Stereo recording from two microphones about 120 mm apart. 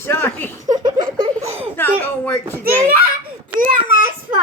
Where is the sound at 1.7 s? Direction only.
20° left (ahead or behind).